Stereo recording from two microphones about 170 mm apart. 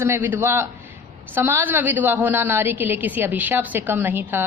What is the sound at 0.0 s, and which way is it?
A woman's voice, 15° right (ahead or behind).